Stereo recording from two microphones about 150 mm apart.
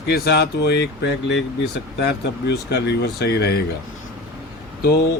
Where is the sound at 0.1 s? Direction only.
90° left.